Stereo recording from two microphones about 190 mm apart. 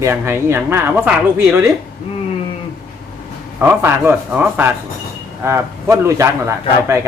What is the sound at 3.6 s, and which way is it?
Speech, 10° right (ahead or behind).